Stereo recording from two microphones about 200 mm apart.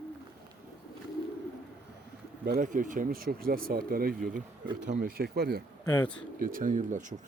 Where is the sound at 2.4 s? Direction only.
45° right (ahead or behind).